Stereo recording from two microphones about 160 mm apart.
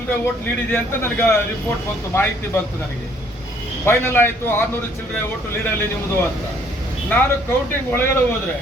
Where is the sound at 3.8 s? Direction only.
15° left (ahead or behind).